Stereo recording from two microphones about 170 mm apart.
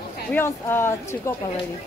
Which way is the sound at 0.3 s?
15° left (ahead or behind).